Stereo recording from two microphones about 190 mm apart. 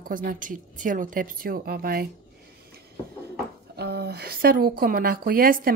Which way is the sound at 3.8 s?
60° right (ahead or behind).